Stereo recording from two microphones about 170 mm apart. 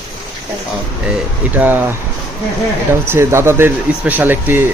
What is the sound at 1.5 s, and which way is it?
Speech, 10° right (ahead or behind).